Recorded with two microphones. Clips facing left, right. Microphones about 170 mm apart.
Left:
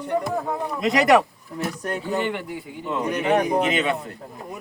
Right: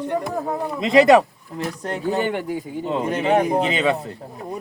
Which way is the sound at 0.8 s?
25° right (ahead or behind).